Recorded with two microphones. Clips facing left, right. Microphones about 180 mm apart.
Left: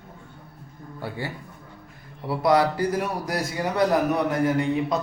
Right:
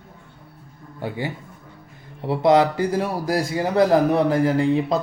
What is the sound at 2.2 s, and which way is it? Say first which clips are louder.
A man's voice: right 4 dB; 25° right (ahead or behind).